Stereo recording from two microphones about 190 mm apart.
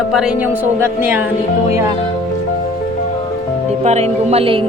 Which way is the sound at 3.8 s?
35° right (ahead or behind).